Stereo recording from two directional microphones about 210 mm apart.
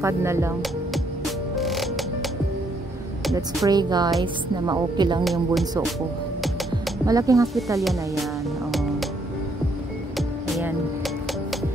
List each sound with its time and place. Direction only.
0.0 s speech: 10° right (ahead or behind)
1.5 s music: centre (ahead or behind)
3.3 s a woman's voice: 20° right (ahead or behind)
5.2 s speech: centre (ahead or behind)
7.1 s speech: 15° right (ahead or behind)